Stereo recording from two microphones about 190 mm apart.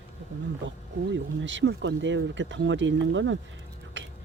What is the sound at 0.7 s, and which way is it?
Speech, 75° right (ahead or behind).